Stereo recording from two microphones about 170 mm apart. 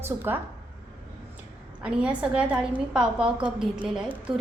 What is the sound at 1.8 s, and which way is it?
A woman's voice, 5° right (ahead or behind).